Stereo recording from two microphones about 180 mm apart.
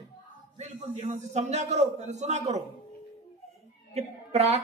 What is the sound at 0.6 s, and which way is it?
A man's voice, 40° right (ahead or behind).